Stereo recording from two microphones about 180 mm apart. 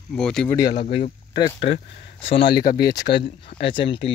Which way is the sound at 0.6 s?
25° left (ahead or behind).